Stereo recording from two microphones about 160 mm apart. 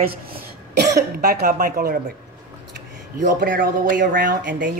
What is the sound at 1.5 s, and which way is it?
Speech, 60° right (ahead or behind).